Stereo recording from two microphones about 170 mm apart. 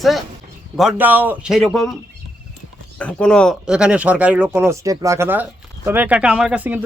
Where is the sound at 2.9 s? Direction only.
5° left (ahead or behind).